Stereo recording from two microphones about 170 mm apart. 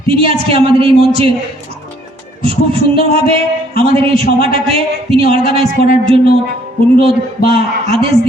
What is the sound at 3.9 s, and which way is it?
A man's voice, 35° right (ahead or behind).